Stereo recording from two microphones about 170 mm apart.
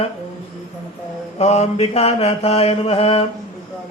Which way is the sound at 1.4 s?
40° left (ahead or behind).